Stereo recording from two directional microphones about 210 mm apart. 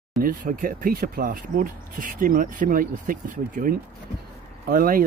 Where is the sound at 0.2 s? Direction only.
40° right (ahead or behind).